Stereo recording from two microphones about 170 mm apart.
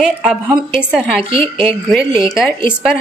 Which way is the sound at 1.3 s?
30° right (ahead or behind).